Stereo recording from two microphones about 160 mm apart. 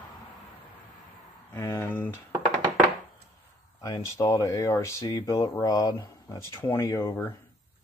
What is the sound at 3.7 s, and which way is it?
Speech, 25° left (ahead or behind).